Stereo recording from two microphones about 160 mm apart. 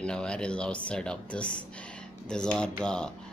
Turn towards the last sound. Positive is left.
turn(degrees=5)  # may be behind; listen again after turning